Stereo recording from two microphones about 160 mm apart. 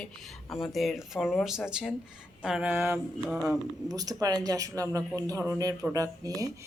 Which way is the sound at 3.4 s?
25° right (ahead or behind).